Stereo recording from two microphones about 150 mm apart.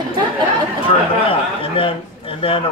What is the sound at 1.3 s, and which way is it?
Speech, 35° left (ahead or behind).